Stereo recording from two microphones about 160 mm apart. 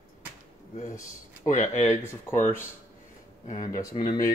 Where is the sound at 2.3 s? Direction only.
15° left (ahead or behind).